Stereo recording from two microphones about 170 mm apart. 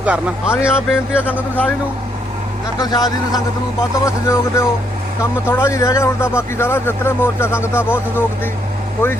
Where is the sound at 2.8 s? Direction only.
25° left (ahead or behind).